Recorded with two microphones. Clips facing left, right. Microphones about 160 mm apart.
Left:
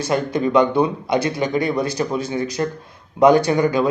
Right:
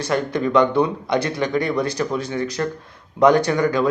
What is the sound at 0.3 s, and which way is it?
Speech, 10° left (ahead or behind).